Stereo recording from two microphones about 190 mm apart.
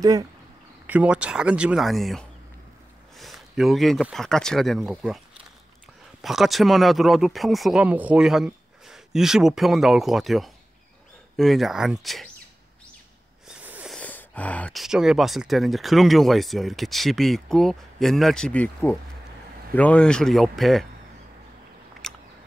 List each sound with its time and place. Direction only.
0.0 s speech: 20° right (ahead or behind)
0.8 s speech: 5° right (ahead or behind)
6.2 s speech: centre (ahead or behind)
13.5 s a sound: 10° right (ahead or behind)
13.9 s speech: 10° left (ahead or behind)
22.0 s a sound: centre (ahead or behind)